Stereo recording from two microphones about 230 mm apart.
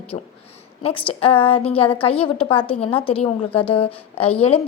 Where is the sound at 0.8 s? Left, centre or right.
Left.